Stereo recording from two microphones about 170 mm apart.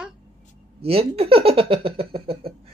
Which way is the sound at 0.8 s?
35° right (ahead or behind).